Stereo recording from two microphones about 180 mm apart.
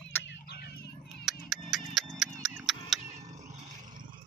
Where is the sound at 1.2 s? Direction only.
Centre (ahead or behind).